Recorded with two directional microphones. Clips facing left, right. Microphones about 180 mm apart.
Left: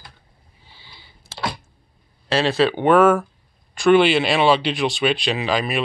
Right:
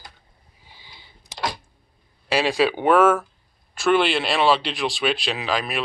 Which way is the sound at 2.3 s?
10° right (ahead or behind).